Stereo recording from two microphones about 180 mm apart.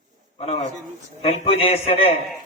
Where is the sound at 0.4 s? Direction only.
35° left (ahead or behind).